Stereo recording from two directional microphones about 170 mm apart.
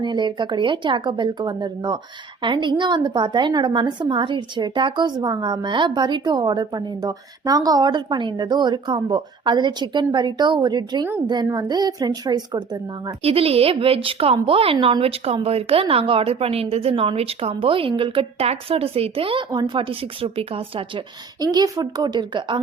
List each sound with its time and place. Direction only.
0.0 s a woman's voice: 25° right (ahead or behind)
13.1 s a woman's voice: 35° right (ahead or behind)